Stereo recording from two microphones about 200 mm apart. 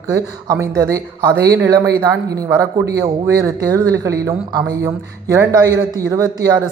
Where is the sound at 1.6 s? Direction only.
15° right (ahead or behind).